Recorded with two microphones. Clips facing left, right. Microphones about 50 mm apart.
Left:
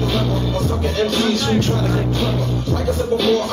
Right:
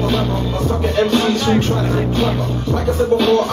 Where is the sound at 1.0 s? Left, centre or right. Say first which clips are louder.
Right 3 dB; right.